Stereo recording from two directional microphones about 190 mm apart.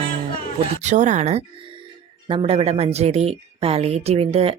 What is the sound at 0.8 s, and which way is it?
A woman's voice, 40° right (ahead or behind).